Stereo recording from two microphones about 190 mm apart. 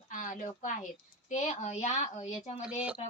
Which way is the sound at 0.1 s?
45° left (ahead or behind).